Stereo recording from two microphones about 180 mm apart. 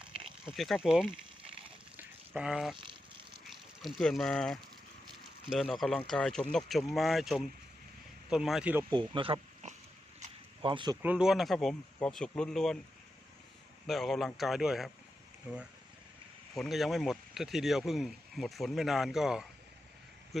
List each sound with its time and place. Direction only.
0.4 s speech: centre (ahead or behind)
2.0 s a sound: 5° right (ahead or behind)
3.8 s speech: centre (ahead or behind)
8.9 s speech: 25° right (ahead or behind)
10.2 s zipper: 30° right (ahead or behind)
11.0 s speech: 5° right (ahead or behind)
13.8 s speech: centre (ahead or behind)